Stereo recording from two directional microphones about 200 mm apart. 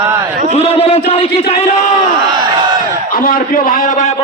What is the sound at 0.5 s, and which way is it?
A man's voice, 30° left (ahead or behind).